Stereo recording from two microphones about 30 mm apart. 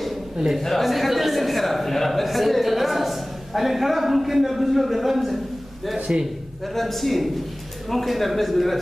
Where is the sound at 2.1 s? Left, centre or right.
Centre.